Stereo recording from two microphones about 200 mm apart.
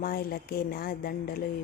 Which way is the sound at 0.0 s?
45° left (ahead or behind).